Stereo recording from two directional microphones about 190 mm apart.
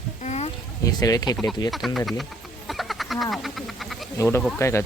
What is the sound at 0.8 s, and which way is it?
Speech, 20° left (ahead or behind).